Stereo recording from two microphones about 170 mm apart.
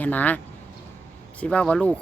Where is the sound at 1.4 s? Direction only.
5° left (ahead or behind).